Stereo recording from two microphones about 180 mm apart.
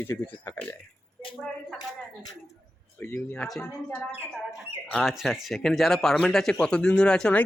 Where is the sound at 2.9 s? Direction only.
10° left (ahead or behind).